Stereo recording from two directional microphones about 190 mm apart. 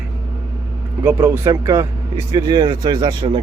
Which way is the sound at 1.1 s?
15° right (ahead or behind).